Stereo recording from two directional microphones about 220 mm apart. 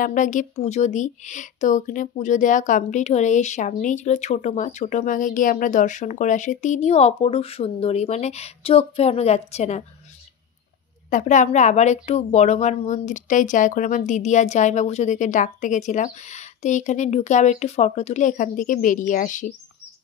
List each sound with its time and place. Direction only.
0.0 s speech: 35° left (ahead or behind)
11.1 s speech: 35° left (ahead or behind)